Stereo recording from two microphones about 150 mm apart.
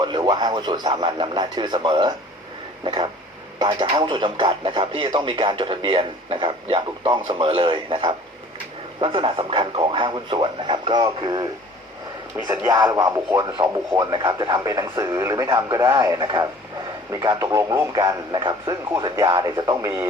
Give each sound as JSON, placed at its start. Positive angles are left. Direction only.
{"t": 0.0, "sound": "speech", "side_deg": -30}
{"t": 12.6, "sound": "speech", "side_deg": -25}